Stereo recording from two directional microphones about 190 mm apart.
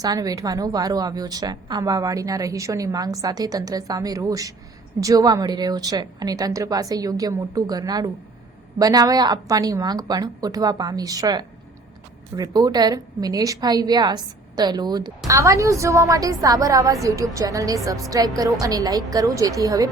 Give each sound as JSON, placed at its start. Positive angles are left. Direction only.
{"t": 0.0, "sound": "a woman's voice", "side_deg": -20}